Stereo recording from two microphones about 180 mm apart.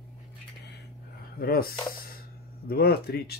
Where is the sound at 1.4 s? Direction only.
55° left (ahead or behind).